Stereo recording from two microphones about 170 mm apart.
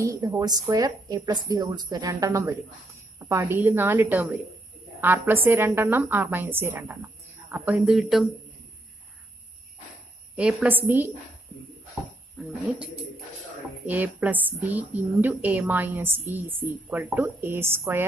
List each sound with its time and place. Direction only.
0.0 s a woman's voice: 20° right (ahead or behind)
7.8 s speech: 5° right (ahead or behind)
10.3 s a woman's voice: 10° right (ahead or behind)
11.9 s a sound: 5° right (ahead or behind)
13.8 s a woman's voice: 10° right (ahead or behind)